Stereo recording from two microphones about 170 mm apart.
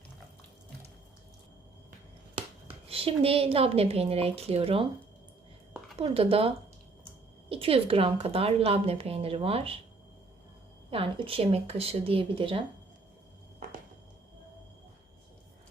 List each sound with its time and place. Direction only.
2.9 s a woman's voice: 35° right (ahead or behind)
6.0 s a woman's voice: 35° right (ahead or behind)
7.5 s a woman's voice: 35° right (ahead or behind)
10.9 s a woman's voice: 30° right (ahead or behind)